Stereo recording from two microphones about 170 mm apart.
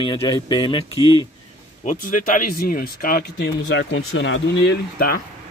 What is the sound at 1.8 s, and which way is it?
Speech, 50° left (ahead or behind).